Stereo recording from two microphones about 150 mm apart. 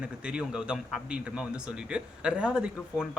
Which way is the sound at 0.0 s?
5° right (ahead or behind).